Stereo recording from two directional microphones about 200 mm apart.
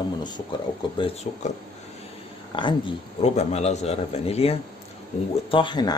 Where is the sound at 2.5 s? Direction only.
25° left (ahead or behind).